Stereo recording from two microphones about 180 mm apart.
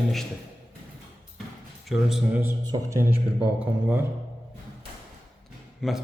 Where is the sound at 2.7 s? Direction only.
15° right (ahead or behind).